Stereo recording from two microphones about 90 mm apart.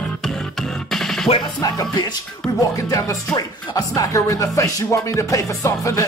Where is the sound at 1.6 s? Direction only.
45° left (ahead or behind).